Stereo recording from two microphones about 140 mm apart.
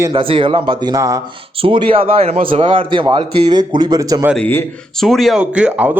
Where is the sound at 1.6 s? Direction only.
40° right (ahead or behind).